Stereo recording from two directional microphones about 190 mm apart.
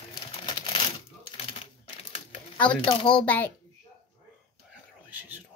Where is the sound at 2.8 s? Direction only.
25° left (ahead or behind).